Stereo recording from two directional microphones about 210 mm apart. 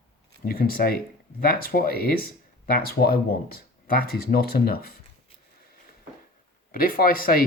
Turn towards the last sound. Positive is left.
turn(degrees=45)  # may be behind; listen again after turning